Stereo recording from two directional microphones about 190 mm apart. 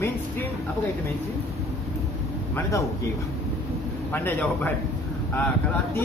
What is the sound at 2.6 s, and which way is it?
Speech, 15° left (ahead or behind).